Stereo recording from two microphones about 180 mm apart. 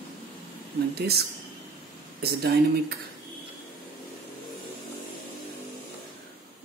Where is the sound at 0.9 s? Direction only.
60° right (ahead or behind).